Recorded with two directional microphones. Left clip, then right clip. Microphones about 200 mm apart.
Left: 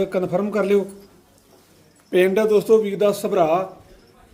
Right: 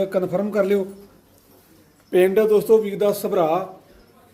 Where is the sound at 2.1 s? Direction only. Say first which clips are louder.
Right 1 dB; 20° left (ahead or behind).